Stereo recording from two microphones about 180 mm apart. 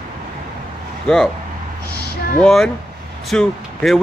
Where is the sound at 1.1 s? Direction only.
Centre (ahead or behind).